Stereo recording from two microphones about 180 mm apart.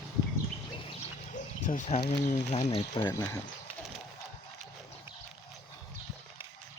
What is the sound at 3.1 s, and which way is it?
Speech, 20° left (ahead or behind).